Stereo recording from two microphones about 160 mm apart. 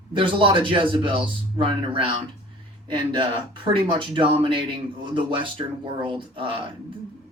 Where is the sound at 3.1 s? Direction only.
30° right (ahead or behind).